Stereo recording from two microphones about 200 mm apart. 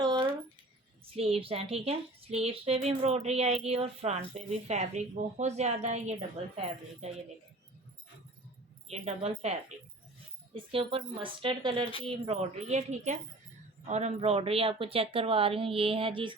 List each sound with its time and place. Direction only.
0.0 s a sound: 20° right (ahead or behind)
1.1 s speech: 30° right (ahead or behind)
8.9 s speech: 30° right (ahead or behind)